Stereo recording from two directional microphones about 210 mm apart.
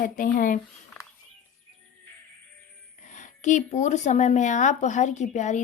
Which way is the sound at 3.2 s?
35° left (ahead or behind).